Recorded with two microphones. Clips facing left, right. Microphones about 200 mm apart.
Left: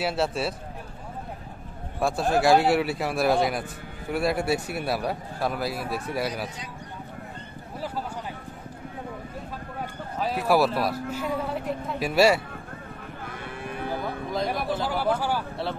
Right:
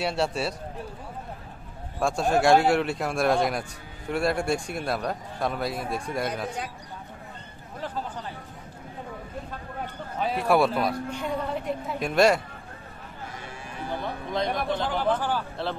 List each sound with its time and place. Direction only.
0.0 s a man's voice: centre (ahead or behind)
2.0 s a man's voice: 5° left (ahead or behind)
10.2 s a man's voice: centre (ahead or behind)
13.2 s livestock: 55° left (ahead or behind)
13.8 s speech: 5° left (ahead or behind)